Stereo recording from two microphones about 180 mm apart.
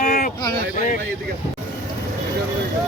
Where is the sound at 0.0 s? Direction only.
50° left (ahead or behind).